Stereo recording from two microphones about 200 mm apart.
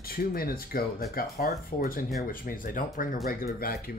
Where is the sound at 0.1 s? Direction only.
45° left (ahead or behind).